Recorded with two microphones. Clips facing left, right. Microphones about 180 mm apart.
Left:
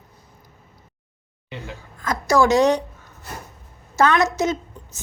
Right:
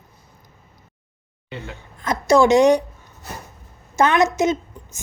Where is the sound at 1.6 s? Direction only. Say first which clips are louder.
Right 2 dB; 20° right (ahead or behind).